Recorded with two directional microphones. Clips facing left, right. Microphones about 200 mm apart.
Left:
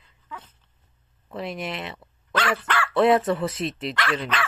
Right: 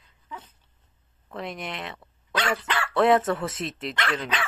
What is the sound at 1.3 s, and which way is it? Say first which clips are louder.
Speech: left 3 dB; 5° left (ahead or behind).